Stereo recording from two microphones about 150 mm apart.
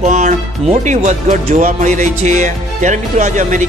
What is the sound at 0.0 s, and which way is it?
Speech, 55° right (ahead or behind).